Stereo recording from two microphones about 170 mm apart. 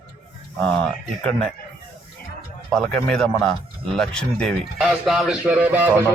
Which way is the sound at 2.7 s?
5° left (ahead or behind).